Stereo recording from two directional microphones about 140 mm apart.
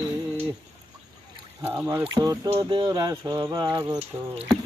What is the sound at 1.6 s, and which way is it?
Speech, 15° right (ahead or behind).